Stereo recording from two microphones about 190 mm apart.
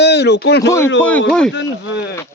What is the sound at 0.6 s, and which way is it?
Speech, 15° left (ahead or behind).